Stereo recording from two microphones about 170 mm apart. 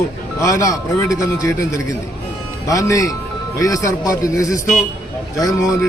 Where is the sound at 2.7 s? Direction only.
20° left (ahead or behind).